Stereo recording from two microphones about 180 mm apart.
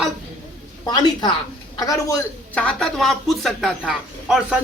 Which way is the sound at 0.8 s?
20° left (ahead or behind).